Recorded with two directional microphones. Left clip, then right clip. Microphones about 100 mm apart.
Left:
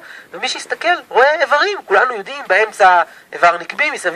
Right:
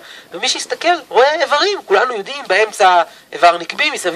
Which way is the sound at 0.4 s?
5° right (ahead or behind).